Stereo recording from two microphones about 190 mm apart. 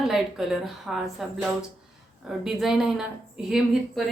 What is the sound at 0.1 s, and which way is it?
Speech, centre (ahead or behind).